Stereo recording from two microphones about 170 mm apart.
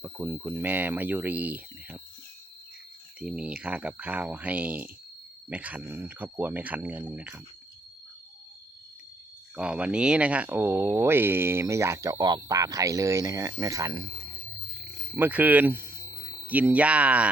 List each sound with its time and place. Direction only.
0.0 s speech: 15° right (ahead or behind)
3.2 s speech: 5° right (ahead or behind)
9.6 s speech: 5° right (ahead or behind)
15.1 s speech: 10° right (ahead or behind)